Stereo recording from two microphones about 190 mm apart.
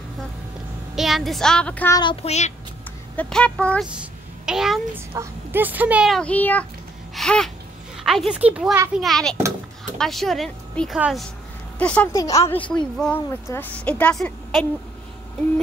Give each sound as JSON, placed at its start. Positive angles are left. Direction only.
{"t": 0.9, "sound": "speech", "side_deg": 0}
{"t": 2.0, "sound": "speech", "side_deg": 30}
{"t": 3.2, "sound": "speech", "side_deg": 5}
{"t": 3.9, "sound": "a sound", "side_deg": -5}
{"t": 4.9, "sound": "speech", "side_deg": -10}
{"t": 9.0, "sound": "a woman's voice", "side_deg": 0}